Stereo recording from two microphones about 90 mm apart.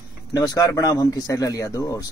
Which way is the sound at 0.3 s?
40° left (ahead or behind).